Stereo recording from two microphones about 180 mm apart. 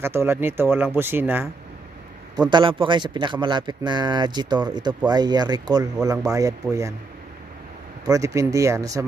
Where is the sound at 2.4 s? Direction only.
25° right (ahead or behind).